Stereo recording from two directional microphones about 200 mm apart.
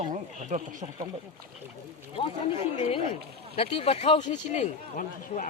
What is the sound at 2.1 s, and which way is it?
Speech, 30° left (ahead or behind).